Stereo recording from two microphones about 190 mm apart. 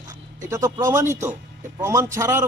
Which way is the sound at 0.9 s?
15° right (ahead or behind).